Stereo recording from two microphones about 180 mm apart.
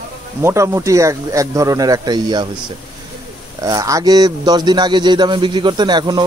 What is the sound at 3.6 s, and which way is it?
Speech, 20° right (ahead or behind).